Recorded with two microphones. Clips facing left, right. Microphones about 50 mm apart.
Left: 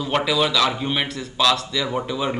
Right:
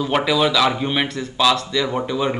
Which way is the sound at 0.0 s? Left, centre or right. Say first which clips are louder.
Right 3 dB; centre.